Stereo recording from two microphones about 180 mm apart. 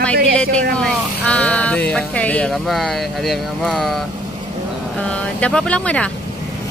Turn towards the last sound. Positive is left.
turn(degrees=5)  # may be behind; listen again after turning